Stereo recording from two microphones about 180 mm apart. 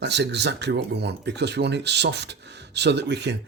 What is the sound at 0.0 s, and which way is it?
Speech, 75° right (ahead or behind).